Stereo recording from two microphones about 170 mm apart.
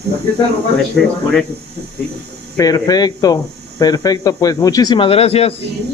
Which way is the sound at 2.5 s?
20° left (ahead or behind).